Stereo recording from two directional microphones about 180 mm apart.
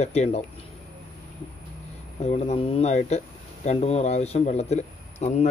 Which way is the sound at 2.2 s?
35° left (ahead or behind).